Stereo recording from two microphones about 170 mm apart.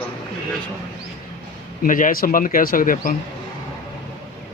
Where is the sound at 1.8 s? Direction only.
50° left (ahead or behind).